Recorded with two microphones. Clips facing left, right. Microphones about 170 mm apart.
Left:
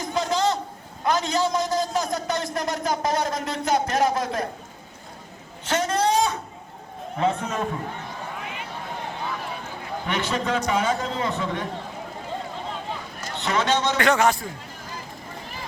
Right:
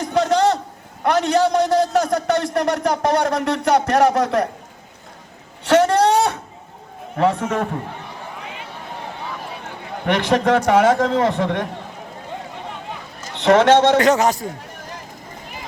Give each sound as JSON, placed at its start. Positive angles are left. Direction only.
{"t": 0.0, "sound": "a sound", "side_deg": -70}
{"t": 1.0, "sound": "a man's voice", "side_deg": -70}
{"t": 5.6, "sound": "a sound", "side_deg": -70}
{"t": 7.2, "sound": "a man's voice", "side_deg": -70}
{"t": 10.1, "sound": "a man's voice", "side_deg": -70}
{"t": 13.4, "sound": "a man's voice", "side_deg": -70}
{"t": 14.0, "sound": "a man's voice", "side_deg": -40}